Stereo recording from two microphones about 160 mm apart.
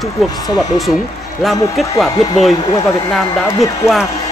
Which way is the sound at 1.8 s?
Centre (ahead or behind).